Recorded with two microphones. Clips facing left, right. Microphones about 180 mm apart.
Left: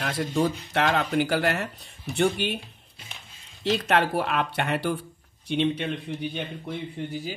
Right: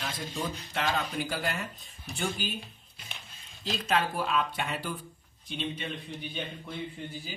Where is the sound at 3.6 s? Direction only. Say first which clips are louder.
Left 6 dB; 70° left (ahead or behind).